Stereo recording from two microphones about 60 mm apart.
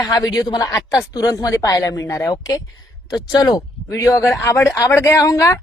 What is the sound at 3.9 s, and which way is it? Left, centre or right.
Speech, left.